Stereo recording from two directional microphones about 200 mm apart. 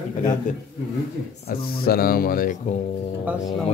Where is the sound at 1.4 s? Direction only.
50° left (ahead or behind).